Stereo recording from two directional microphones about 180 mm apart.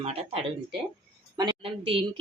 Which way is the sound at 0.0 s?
35° right (ahead or behind).